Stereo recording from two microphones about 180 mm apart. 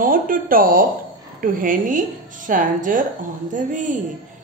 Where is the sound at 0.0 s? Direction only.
50° right (ahead or behind).